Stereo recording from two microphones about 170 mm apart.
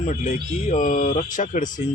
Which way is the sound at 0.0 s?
45° left (ahead or behind).